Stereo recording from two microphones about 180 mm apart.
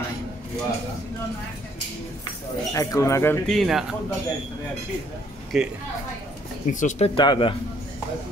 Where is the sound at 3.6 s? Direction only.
Centre (ahead or behind).